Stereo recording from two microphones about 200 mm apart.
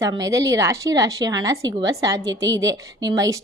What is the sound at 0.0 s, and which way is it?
A woman's voice, 15° right (ahead or behind).